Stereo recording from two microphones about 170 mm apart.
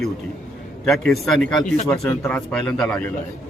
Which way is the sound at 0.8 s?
Centre (ahead or behind).